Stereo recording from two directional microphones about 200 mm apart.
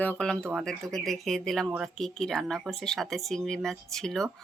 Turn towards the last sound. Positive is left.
turn(degrees=0)  # may be behind; listen again after turning